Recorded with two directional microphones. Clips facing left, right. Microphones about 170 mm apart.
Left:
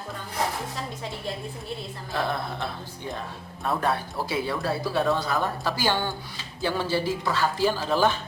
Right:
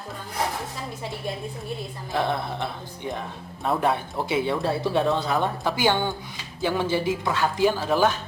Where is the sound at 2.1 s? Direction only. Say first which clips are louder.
Right 3 dB; 20° right (ahead or behind).